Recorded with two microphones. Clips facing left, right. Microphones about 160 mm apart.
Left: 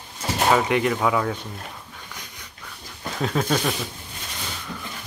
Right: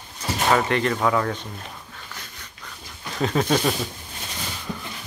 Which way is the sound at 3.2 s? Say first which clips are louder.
Right 2 dB; centre (ahead or behind).